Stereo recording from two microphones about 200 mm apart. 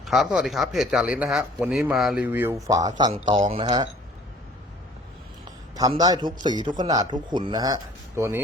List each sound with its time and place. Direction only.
0.0 s speech: centre (ahead or behind); by 3.1 s 20° right (ahead or behind)
3.4 s speech: 30° right (ahead or behind)
5.7 s speech: 20° right (ahead or behind)